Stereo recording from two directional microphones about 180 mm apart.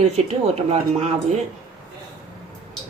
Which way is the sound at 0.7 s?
35° right (ahead or behind).